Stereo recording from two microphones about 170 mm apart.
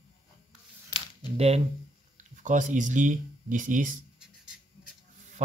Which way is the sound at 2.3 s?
50° right (ahead or behind).